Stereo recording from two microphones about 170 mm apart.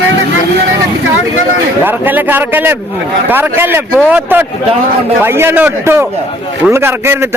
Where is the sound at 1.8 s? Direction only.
10° right (ahead or behind).